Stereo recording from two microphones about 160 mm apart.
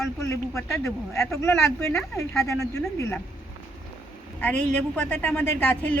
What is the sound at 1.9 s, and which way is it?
Speech, 20° left (ahead or behind).